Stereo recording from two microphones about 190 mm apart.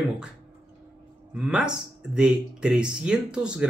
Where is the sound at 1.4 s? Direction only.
5° right (ahead or behind).